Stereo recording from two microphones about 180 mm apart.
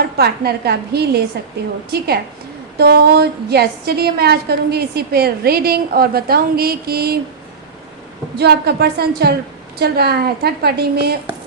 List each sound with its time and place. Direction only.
0.2 s a woman's voice: 65° right (ahead or behind)
8.4 s a woman's voice: 65° right (ahead or behind)